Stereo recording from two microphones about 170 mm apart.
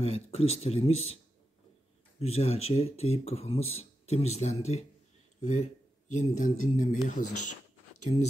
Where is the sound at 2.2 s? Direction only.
40° left (ahead or behind).